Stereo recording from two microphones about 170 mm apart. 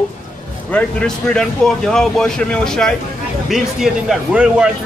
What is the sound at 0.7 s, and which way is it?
A man's voice, 5° left (ahead or behind).